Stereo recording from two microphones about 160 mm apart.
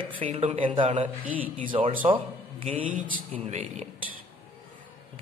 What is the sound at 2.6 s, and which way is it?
Speech, 55° right (ahead or behind).